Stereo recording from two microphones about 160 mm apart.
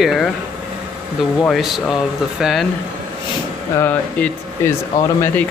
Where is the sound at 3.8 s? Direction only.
10° left (ahead or behind).